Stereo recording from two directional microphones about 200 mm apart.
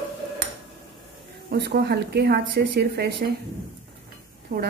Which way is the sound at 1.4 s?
55° right (ahead or behind).